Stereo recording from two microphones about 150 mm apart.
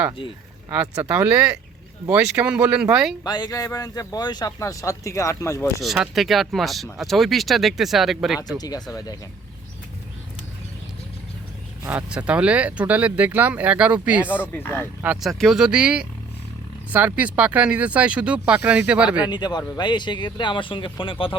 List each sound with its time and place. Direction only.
1.0 s speech: 10° right (ahead or behind)
3.2 s speech: 25° left (ahead or behind)
5.8 s speech: centre (ahead or behind)
8.5 s speech: 25° left (ahead or behind)
11.9 s speech: 10° right (ahead or behind)
14.5 s speech: 15° left (ahead or behind)
15.0 s speech: 10° right (ahead or behind)
19.3 s speech: 30° left (ahead or behind)